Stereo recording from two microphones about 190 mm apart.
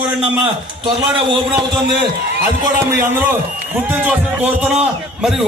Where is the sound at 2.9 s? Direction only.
10° right (ahead or behind).